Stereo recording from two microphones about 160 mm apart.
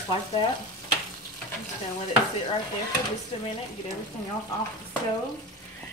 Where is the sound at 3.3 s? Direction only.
35° left (ahead or behind).